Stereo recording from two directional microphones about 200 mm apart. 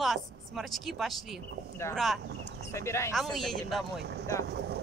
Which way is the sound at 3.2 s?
Centre (ahead or behind).